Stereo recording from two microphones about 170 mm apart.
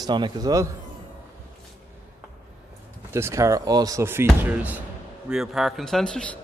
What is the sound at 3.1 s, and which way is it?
Speech, 15° right (ahead or behind).